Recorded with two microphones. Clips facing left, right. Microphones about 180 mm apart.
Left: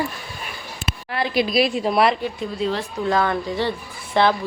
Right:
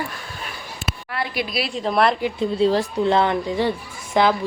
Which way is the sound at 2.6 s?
35° right (ahead or behind).